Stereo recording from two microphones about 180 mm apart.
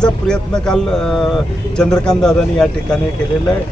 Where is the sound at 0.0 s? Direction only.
5° left (ahead or behind).